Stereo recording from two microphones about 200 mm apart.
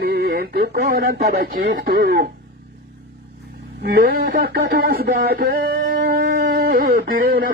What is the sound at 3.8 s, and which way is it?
Speech, 55° right (ahead or behind).